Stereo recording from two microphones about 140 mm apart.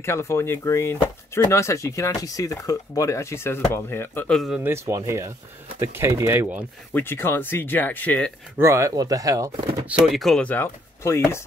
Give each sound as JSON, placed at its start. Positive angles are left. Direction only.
{"t": 0.0, "sound": "speech", "side_deg": 20}
{"t": 4.6, "sound": "speech", "side_deg": -15}
{"t": 6.9, "sound": "speech", "side_deg": 15}
{"t": 8.5, "sound": "speech", "side_deg": -20}
{"t": 10.0, "sound": "speech", "side_deg": 0}
{"t": 10.5, "sound": "speech", "side_deg": 15}